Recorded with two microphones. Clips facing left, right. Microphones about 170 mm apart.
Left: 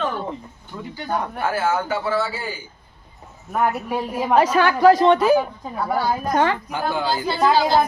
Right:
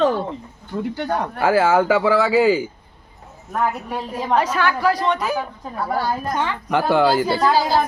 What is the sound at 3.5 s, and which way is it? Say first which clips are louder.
A woman's voice: left 1 dB; 10° left (ahead or behind).